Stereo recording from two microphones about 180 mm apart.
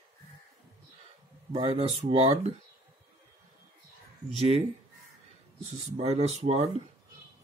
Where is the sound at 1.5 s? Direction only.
30° right (ahead or behind).